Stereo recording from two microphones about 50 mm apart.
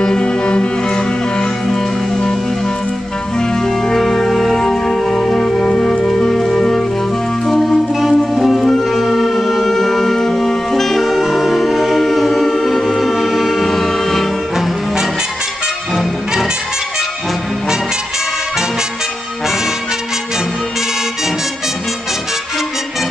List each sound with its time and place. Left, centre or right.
0.0 s cello: centre
0.8 s music: centre
3.3 s music: centre